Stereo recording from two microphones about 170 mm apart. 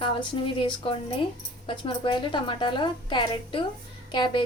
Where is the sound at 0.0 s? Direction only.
30° left (ahead or behind).